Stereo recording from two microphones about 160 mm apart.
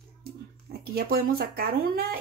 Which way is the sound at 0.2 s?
70° right (ahead or behind).